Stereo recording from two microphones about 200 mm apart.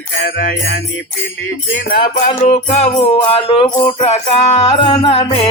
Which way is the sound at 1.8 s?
45° left (ahead or behind).